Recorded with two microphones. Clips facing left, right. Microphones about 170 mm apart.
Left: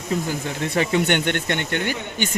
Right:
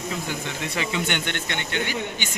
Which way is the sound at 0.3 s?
45° left (ahead or behind).